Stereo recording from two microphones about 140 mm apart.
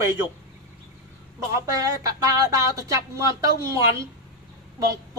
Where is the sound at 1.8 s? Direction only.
25° right (ahead or behind).